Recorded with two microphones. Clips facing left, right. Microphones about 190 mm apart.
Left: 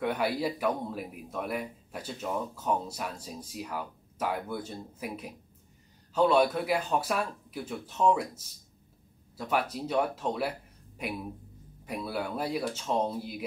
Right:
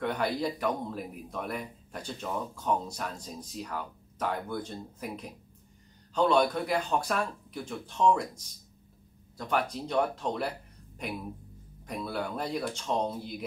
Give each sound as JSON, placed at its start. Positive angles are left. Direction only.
{"t": 0.0, "sound": "speech", "side_deg": 10}
{"t": 9.4, "sound": "speech", "side_deg": 5}